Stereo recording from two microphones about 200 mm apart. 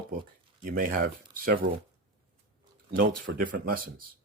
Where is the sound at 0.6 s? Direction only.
45° right (ahead or behind).